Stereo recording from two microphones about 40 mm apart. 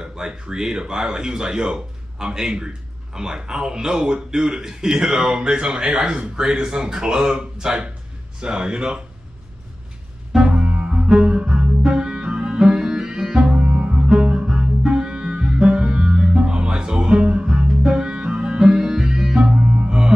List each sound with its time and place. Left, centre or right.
0.0 s speech: centre
10.3 s double bass: centre
11.1 s music: right
13.4 s music: right
14.0 s double bass: right
14.9 s music: right
19.6 s music: right